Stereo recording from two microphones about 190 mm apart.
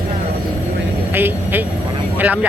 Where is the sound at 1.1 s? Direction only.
10° right (ahead or behind).